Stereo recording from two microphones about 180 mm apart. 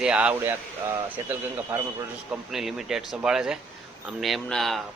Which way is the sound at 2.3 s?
Centre (ahead or behind).